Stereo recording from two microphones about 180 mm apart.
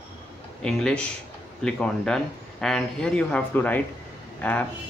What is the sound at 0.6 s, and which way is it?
A man's voice, 5° left (ahead or behind).